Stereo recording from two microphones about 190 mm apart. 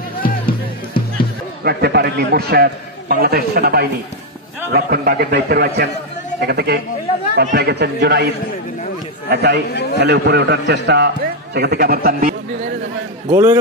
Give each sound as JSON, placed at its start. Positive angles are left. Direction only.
{"t": 1.6, "sound": "a man's voice", "side_deg": -55}
{"t": 9.3, "sound": "a man's voice", "side_deg": -60}
{"t": 13.3, "sound": "a man's voice", "side_deg": -15}